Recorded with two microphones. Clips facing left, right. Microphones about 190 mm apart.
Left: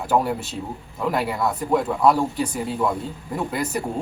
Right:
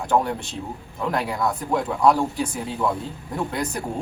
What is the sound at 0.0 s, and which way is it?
A man's voice, 5° left (ahead or behind).